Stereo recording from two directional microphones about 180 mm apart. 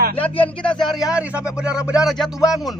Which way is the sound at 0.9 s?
5° right (ahead or behind).